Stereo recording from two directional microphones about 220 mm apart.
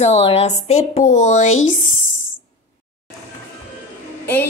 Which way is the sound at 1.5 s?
65° left (ahead or behind).